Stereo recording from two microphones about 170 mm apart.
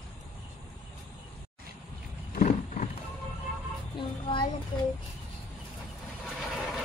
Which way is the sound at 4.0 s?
25° left (ahead or behind).